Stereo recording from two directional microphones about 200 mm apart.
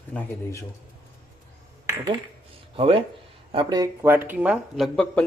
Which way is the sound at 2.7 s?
30° right (ahead or behind).